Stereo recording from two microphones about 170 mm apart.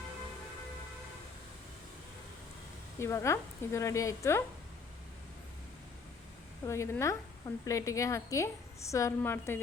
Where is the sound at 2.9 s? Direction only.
15° left (ahead or behind).